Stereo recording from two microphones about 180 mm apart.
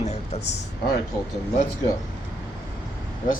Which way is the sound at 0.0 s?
40° left (ahead or behind).